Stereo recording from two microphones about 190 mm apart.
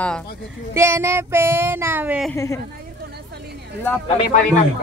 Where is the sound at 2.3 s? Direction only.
15° left (ahead or behind).